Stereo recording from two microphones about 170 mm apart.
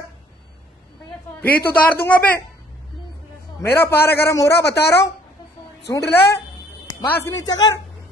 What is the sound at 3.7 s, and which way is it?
Speech, 15° left (ahead or behind).